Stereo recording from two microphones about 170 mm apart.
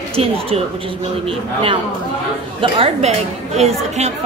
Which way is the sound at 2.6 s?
35° right (ahead or behind).